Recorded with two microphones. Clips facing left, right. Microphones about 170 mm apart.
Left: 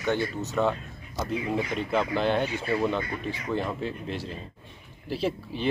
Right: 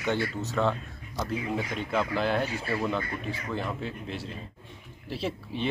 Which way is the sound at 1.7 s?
Centre (ahead or behind).